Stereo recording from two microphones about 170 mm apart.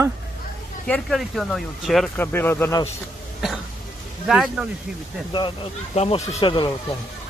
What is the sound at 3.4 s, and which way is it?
Speech, centre (ahead or behind).